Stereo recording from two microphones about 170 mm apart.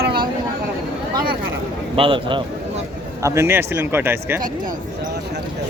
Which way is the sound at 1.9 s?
30° right (ahead or behind).